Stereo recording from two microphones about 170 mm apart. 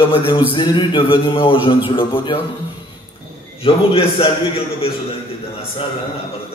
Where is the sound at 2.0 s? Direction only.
30° left (ahead or behind).